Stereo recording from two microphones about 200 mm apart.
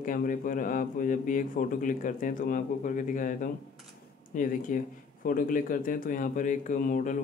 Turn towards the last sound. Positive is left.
turn(degrees=40)  # may be behind; listen again after turning